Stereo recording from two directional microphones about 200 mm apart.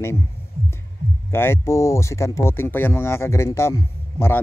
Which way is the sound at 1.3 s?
10° left (ahead or behind).